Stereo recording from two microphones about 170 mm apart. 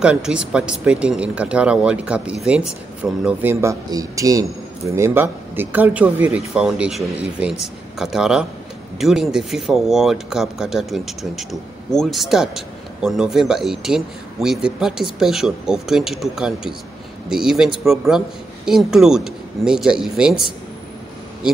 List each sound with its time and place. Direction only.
0.0 s speech: 5° right (ahead or behind)
3.6 s speech: 20° right (ahead or behind); by 20.4 s 5° right (ahead or behind)